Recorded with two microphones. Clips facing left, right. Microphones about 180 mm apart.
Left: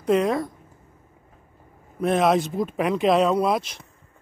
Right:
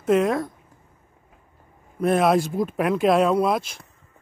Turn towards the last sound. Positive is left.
turn(degrees=0)  # may be behind; listen again after turning